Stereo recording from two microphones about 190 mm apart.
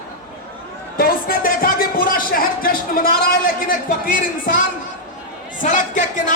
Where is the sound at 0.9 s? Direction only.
50° left (ahead or behind).